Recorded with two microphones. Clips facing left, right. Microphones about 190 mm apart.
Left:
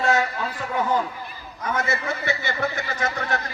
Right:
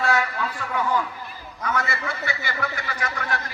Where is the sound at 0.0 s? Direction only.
20° left (ahead or behind).